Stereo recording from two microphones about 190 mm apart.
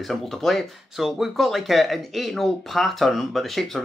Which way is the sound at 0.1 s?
Centre (ahead or behind).